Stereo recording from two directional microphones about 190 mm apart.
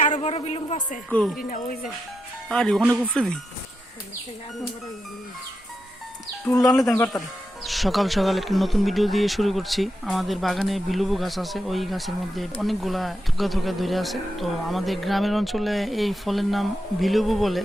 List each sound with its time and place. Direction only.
0.1 s a woman's voice: 35° left (ahead or behind)
1.1 s speech: centre (ahead or behind)
1.4 s speech: 45° left (ahead or behind)
2.5 s speech: 5° left (ahead or behind)
6.4 s speech: 15° left (ahead or behind)
7.6 s speech: centre (ahead or behind)